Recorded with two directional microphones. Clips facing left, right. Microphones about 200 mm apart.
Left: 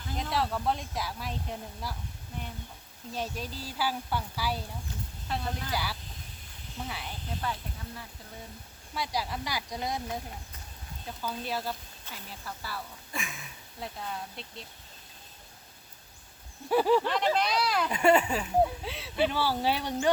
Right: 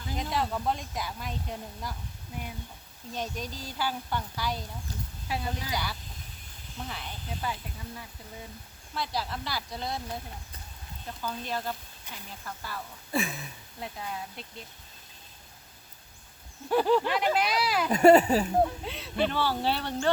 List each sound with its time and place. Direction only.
0.2 s speech: centre (ahead or behind)
3.2 s speech: 5° left (ahead or behind)
5.3 s speech: 10° right (ahead or behind)
5.7 s speech: 5° left (ahead or behind)
9.0 s speech: 10° left (ahead or behind)
11.2 s speech: 5° left (ahead or behind)
12.1 s speech: 15° right (ahead or behind)
12.5 s speech: 5° left (ahead or behind)
13.1 s speech: 35° right (ahead or behind)
13.7 s speech: centre (ahead or behind)
16.6 s speech: 5° left (ahead or behind)
17.1 s speech: 5° right (ahead or behind)
17.8 s speech: 40° right (ahead or behind)
18.6 s speech: 5° left (ahead or behind)